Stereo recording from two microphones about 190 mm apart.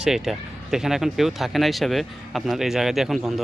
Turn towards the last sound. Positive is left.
turn(degrees=0)  # may be behind; listen again after turning